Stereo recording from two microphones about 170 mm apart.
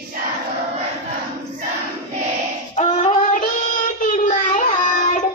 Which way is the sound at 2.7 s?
40° left (ahead or behind).